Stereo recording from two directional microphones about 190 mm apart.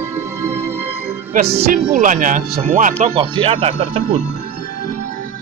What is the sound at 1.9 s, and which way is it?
Speech, 45° right (ahead or behind).